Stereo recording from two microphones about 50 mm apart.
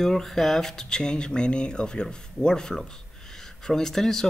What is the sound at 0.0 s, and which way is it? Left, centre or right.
Speech, centre.